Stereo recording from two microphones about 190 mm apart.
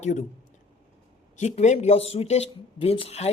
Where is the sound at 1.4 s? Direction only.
35° left (ahead or behind).